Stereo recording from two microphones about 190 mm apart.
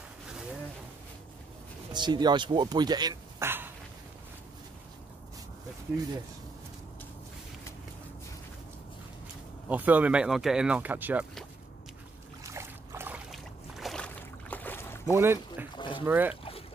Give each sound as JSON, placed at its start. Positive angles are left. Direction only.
{"t": 1.9, "sound": "speech", "side_deg": -25}
{"t": 9.7, "sound": "speech", "side_deg": -10}
{"t": 12.4, "sound": "boat", "side_deg": -15}
{"t": 13.3, "sound": "boat", "side_deg": 0}
{"t": 15.1, "sound": "a man's voice", "side_deg": -15}
{"t": 15.7, "sound": "a sound", "side_deg": 25}
{"t": 16.1, "sound": "speech", "side_deg": -10}